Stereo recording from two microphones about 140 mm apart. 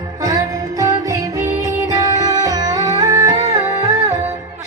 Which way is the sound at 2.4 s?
25° right (ahead or behind).